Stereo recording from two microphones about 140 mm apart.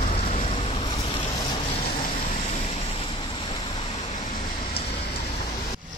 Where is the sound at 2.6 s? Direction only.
45° left (ahead or behind).